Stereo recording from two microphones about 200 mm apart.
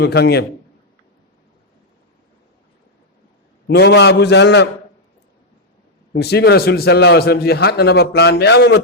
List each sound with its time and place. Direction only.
0.0 s a man's voice: 55° left (ahead or behind)
3.7 s a man's voice: 55° left (ahead or behind)
6.1 s a man's voice: 55° left (ahead or behind)